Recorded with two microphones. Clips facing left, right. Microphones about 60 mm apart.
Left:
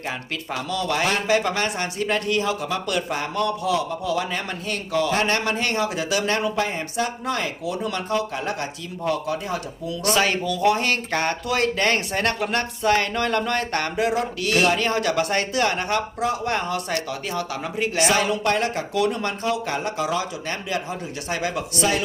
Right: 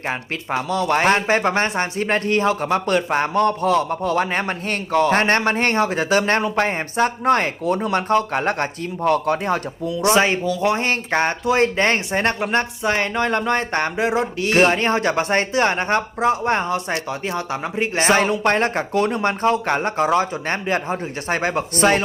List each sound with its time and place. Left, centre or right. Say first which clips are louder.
0.1 s speech: right 6 dB; right
9.9 s speech: right 4 dB; right